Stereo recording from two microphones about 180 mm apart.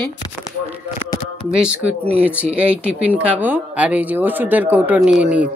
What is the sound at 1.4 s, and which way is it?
Speech, 5° right (ahead or behind).